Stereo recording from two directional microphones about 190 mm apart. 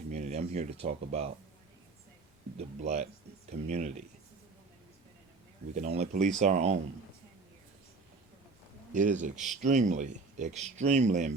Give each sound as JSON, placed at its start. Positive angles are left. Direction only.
{"t": 0.1, "sound": "speech", "side_deg": -35}
{"t": 2.6, "sound": "speech", "side_deg": -35}
{"t": 5.7, "sound": "speech", "side_deg": -35}
{"t": 8.9, "sound": "speech", "side_deg": -40}